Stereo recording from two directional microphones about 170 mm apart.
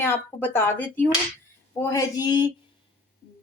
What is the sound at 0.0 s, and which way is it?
Speech, 15° left (ahead or behind).